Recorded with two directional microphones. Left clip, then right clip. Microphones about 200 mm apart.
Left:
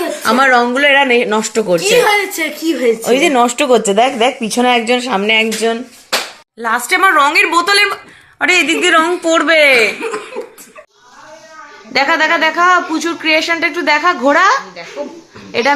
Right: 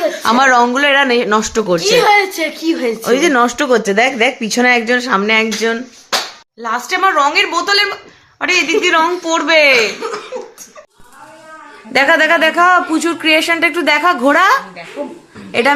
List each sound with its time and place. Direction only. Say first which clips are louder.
0.3 s speech: even; 15° right (ahead or behind)
6.6 s speech: left 3 dB; 20° left (ahead or behind)
11.9 s speech: right 2 dB; 5° right (ahead or behind)